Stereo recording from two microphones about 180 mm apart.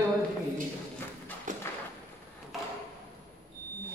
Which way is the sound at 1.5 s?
45° right (ahead or behind).